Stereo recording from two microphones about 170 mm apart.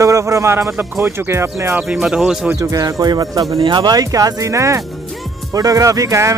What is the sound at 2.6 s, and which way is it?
Speech, 20° right (ahead or behind).